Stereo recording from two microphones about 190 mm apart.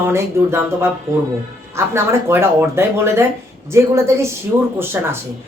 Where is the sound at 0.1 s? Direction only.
15° right (ahead or behind).